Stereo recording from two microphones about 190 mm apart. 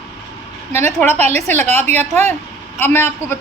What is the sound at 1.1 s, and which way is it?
Speech, 35° right (ahead or behind).